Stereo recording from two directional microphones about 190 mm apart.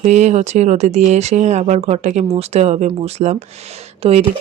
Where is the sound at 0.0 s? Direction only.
40° right (ahead or behind).